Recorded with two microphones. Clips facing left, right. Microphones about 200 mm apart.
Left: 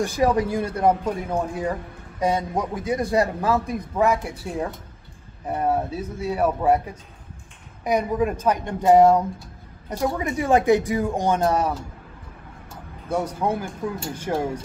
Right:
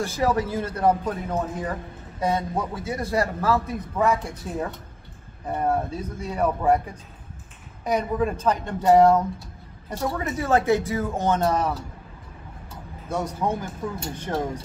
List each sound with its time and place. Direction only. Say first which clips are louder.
0.0 s speech: left 3 dB; 15° left (ahead or behind)
5.6 s speech: left 1 dB; 5° left (ahead or behind)
7.8 s speech: left 2 dB; 10° left (ahead or behind)
13.1 s speech: left 2 dB; 10° left (ahead or behind)